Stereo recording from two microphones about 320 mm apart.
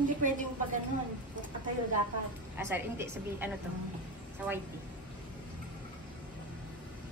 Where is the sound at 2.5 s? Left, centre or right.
Centre.